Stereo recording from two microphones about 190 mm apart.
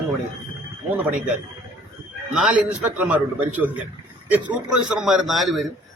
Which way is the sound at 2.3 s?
5° right (ahead or behind).